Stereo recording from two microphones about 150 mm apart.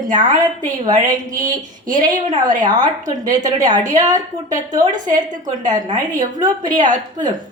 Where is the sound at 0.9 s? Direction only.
60° right (ahead or behind).